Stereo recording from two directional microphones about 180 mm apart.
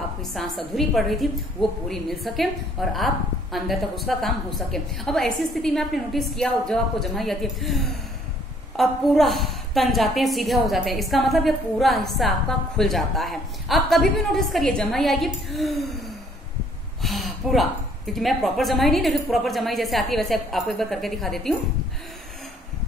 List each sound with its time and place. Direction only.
0.2 s a woman's voice: centre (ahead or behind)
17.0 s a woman's voice: centre (ahead or behind)